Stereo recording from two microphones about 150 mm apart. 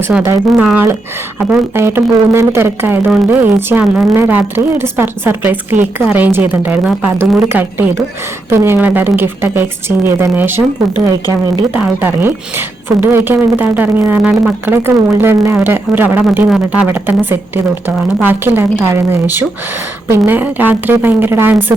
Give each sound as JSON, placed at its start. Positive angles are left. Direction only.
{"t": 0.1, "sound": "a woman's voice", "side_deg": -10}
{"t": 11.0, "sound": "a woman's voice", "side_deg": -25}
{"t": 11.7, "sound": "a woman's voice", "side_deg": -10}